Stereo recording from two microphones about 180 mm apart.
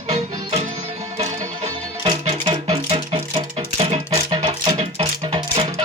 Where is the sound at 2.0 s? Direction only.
25° right (ahead or behind).